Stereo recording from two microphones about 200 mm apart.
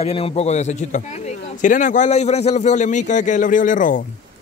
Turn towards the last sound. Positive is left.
turn(degrees=40)  # may be behind; listen again after turning